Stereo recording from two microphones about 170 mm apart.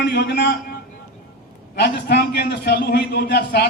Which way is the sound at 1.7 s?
75° left (ahead or behind).